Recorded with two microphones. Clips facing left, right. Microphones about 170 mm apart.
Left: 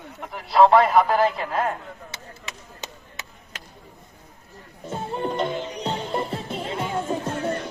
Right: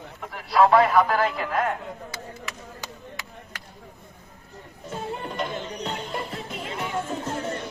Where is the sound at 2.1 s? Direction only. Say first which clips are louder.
Right 3 dB; 20° left (ahead or behind).